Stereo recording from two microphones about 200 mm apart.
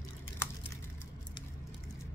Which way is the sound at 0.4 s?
10° left (ahead or behind).